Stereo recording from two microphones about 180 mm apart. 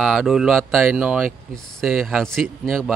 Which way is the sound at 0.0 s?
Centre (ahead or behind).